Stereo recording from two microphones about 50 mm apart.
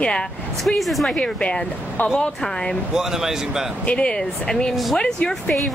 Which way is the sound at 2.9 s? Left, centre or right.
Centre.